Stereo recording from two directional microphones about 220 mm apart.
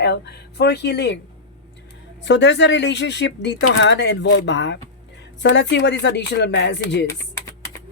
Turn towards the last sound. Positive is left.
turn(degrees=50)  # may be behind; listen again after turning